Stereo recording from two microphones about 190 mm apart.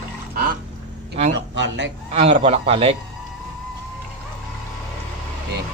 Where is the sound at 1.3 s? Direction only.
70° right (ahead or behind).